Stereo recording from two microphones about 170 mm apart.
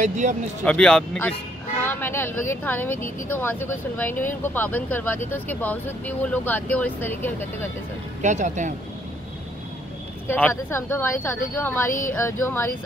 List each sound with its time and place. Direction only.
0.0 s speech: 45° right (ahead or behind)
0.7 s speech: 5° left (ahead or behind)
8.2 s speech: 45° right (ahead or behind)
10.2 s speech: 10° left (ahead or behind)